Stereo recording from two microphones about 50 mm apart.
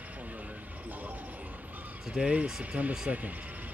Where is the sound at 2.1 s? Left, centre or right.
Right.